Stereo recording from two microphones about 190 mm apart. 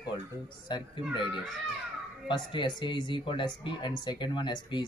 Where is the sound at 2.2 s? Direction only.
25° left (ahead or behind).